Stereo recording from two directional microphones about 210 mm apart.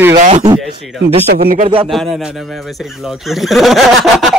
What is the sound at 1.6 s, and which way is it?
Speech, 25° right (ahead or behind).